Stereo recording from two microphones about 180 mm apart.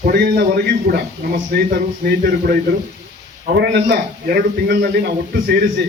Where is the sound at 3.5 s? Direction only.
70° right (ahead or behind).